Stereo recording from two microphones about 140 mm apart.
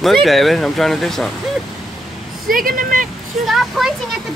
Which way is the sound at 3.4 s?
Centre (ahead or behind).